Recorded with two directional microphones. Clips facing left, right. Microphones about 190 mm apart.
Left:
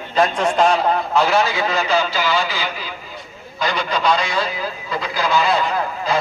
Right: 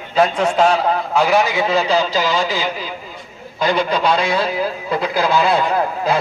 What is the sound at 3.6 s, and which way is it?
A man's voice, 50° right (ahead or behind).